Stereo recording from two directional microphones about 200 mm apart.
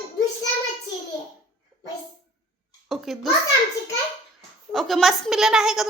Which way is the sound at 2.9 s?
Centre (ahead or behind).